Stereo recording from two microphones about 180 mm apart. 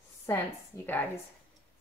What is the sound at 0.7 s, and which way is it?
Speech, 15° left (ahead or behind).